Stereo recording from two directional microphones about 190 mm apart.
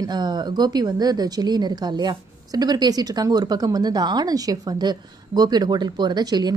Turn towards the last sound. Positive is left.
turn(degrees=-20)  # may be behind; listen again after turning